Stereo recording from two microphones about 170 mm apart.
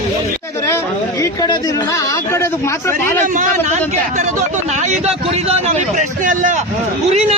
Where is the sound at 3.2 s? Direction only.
45° right (ahead or behind).